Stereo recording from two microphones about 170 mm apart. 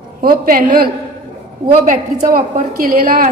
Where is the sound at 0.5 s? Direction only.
60° right (ahead or behind).